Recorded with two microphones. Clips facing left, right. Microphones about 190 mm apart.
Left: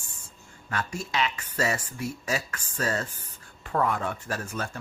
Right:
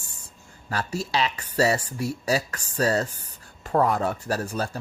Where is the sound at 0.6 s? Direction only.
35° right (ahead or behind).